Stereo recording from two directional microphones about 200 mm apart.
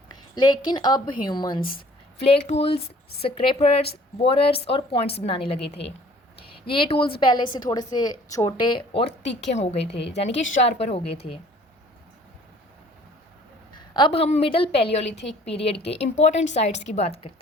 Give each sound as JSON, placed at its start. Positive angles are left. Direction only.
{"t": 0.1, "sound": "a woman's voice", "side_deg": 20}
{"t": 9.2, "sound": "speech", "side_deg": 60}
{"t": 10.5, "sound": "speech", "side_deg": 30}
{"t": 13.7, "sound": "a woman's voice", "side_deg": 25}